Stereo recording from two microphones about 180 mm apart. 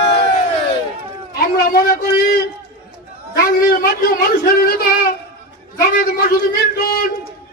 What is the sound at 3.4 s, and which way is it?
A man's voice, 55° left (ahead or behind).